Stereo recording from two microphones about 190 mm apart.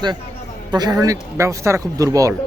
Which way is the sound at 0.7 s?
20° right (ahead or behind).